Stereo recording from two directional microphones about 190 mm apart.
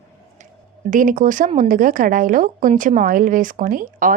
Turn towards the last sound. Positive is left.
turn(degrees=-45)  # may be behind; listen again after turning